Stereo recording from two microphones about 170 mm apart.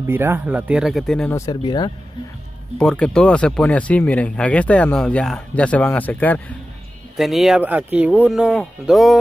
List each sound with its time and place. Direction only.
0.0 s speech: 15° right (ahead or behind); by 1.3 s 5° left (ahead or behind)
1.3 s speech: 20° left (ahead or behind)
2.8 s speech: 5° left (ahead or behind)
7.2 s speech: centre (ahead or behind)